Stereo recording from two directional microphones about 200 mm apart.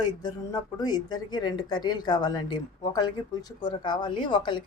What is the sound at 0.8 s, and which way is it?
Speech, 20° left (ahead or behind).